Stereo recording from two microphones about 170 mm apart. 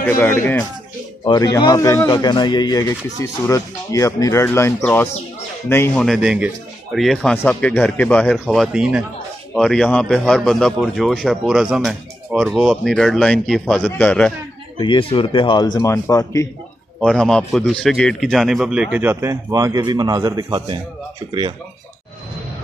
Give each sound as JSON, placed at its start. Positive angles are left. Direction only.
{"t": 0.0, "sound": "speech", "side_deg": 15}
{"t": 6.0, "sound": "a man's voice", "side_deg": -5}
{"t": 14.8, "sound": "speech", "side_deg": 30}
{"t": 17.0, "sound": "a man's voice", "side_deg": 5}